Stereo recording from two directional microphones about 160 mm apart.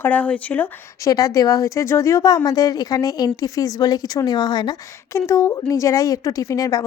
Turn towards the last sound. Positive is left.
turn(degrees=20)  # may be behind; listen again after turning